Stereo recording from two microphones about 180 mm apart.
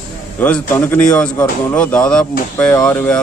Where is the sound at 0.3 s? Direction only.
10° left (ahead or behind).